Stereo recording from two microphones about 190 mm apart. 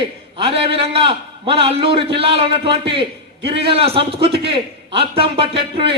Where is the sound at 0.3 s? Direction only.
30° right (ahead or behind).